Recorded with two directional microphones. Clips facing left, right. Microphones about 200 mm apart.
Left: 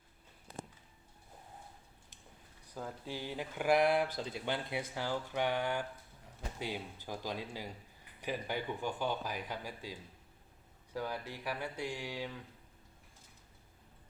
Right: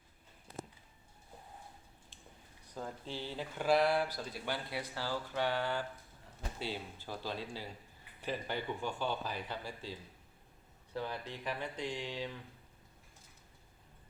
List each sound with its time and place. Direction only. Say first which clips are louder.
2.6 s speech: even; 5° left (ahead or behind)